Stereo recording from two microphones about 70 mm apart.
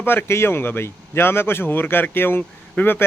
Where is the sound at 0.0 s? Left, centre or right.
Left.